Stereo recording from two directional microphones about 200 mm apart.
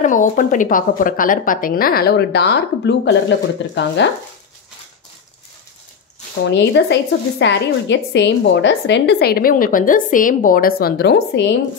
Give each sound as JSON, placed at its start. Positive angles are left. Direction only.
{"t": 0.0, "sound": "a woman's voice", "side_deg": 40}
{"t": 6.4, "sound": "speech", "side_deg": 60}